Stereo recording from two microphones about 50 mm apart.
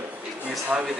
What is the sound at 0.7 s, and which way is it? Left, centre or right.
Speech, right.